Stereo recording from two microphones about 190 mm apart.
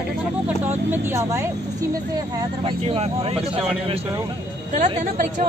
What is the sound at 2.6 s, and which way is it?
Speech, 30° right (ahead or behind).